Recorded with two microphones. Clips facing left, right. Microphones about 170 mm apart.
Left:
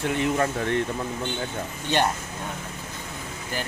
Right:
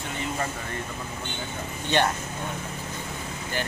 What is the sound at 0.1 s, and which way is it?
Speech, 70° left (ahead or behind).